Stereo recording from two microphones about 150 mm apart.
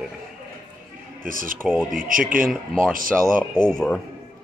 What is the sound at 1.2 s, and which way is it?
Speech, 65° right (ahead or behind).